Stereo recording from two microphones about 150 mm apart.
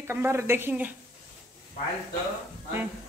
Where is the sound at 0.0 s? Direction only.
15° right (ahead or behind).